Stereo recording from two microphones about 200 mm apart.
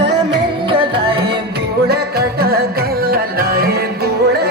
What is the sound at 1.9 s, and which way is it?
Music, 50° right (ahead or behind).